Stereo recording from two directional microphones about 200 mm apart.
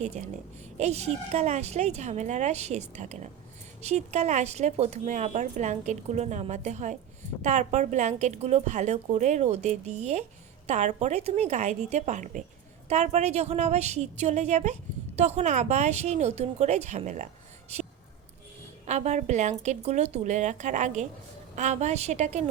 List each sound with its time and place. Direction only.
0.0 s speech: 35° right (ahead or behind)
18.9 s speech: 35° right (ahead or behind)